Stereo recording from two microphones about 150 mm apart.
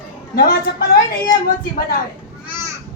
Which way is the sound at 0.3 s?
90° left.